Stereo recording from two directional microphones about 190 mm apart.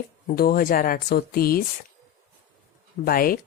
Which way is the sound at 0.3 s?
50° left (ahead or behind).